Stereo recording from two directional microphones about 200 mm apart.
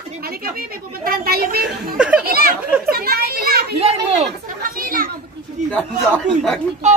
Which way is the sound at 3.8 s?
30° right (ahead or behind).